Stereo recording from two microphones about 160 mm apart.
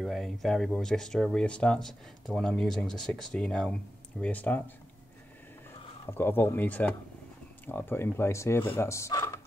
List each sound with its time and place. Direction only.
0.0 s speech: centre (ahead or behind)
6.1 s speech: 15° left (ahead or behind)